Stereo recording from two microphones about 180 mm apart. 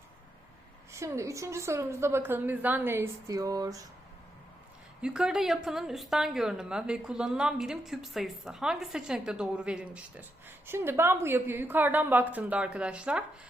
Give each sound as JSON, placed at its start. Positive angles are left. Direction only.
{"t": 0.9, "sound": "a woman's voice", "side_deg": -15}
{"t": 5.0, "sound": "a woman's voice", "side_deg": -5}